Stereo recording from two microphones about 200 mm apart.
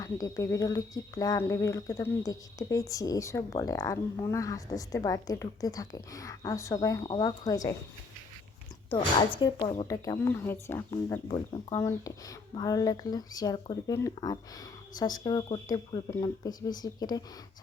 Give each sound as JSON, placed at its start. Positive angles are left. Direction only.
{"t": 0.0, "sound": "a woman's voice", "side_deg": 15}
{"t": 8.9, "sound": "a woman's voice", "side_deg": 25}
{"t": 11.3, "sound": "speech", "side_deg": 25}
{"t": 11.8, "sound": "a woman's voice", "side_deg": 15}